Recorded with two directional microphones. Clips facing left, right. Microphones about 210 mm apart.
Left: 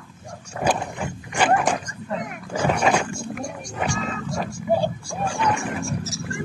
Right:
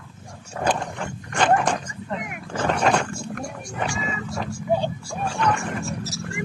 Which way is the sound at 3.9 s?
5° right (ahead or behind).